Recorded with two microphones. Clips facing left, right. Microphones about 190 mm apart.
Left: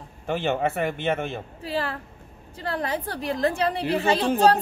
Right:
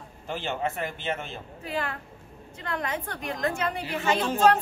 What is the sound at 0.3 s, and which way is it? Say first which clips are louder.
Speech: left 6 dB; 60° left (ahead or behind).